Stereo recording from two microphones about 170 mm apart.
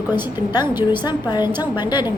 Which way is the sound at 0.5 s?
25° left (ahead or behind).